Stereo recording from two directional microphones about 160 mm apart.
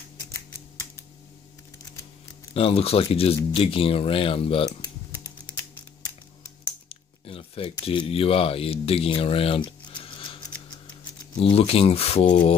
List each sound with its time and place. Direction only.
2.5 s speech: 35° left (ahead or behind)
4.6 s typing: 20° left (ahead or behind)
6.9 s a sound: 35° left (ahead or behind)
7.8 s speech: 35° left (ahead or behind)
10.1 s a sound: 30° left (ahead or behind)
11.3 s speech: 35° left (ahead or behind)